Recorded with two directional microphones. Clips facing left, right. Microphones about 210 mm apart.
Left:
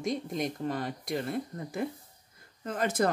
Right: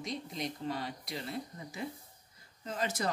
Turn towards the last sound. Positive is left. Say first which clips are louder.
# left 7 dB
turn(degrees=55)  # may be behind; listen again after turning